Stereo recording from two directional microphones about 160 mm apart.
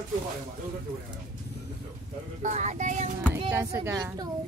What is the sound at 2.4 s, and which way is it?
Speech, 50° right (ahead or behind).